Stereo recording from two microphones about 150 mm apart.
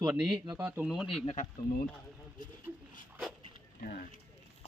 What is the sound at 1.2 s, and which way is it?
Speech, 50° left (ahead or behind).